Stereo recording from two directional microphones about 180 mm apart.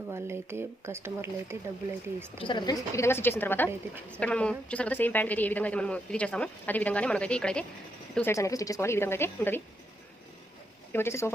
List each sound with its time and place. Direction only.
0.1 s speech: 15° right (ahead or behind)
2.4 s a woman's voice: 25° left (ahead or behind)
10.9 s a woman's voice: 15° left (ahead or behind)